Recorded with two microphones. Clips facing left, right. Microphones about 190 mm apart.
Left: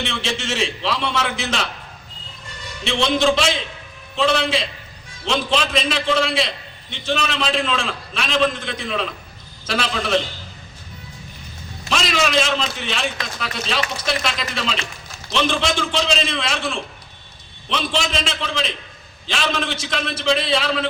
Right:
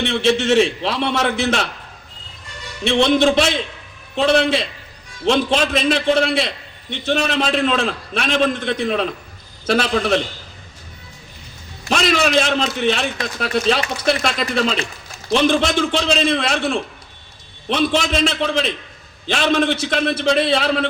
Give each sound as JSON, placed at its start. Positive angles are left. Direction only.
{"t": 0.0, "sound": "a man's voice", "side_deg": -60}
{"t": 2.8, "sound": "a man's voice", "side_deg": -55}
{"t": 11.9, "sound": "a man's voice", "side_deg": -45}